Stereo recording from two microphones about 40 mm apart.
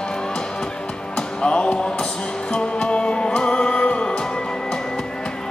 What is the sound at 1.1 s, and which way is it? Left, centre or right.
Music, left.